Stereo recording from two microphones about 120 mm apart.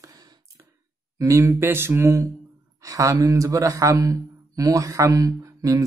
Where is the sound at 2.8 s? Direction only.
25° right (ahead or behind).